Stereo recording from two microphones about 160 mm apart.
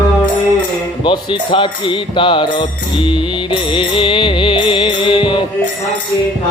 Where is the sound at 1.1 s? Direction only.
30° left (ahead or behind).